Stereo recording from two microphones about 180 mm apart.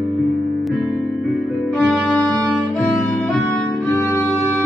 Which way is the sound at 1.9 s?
5° left (ahead or behind).